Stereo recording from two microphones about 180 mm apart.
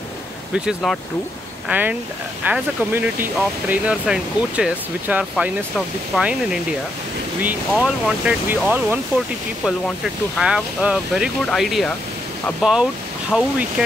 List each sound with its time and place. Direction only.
0.8 s speech: centre (ahead or behind)
13.3 s speech: 5° right (ahead or behind)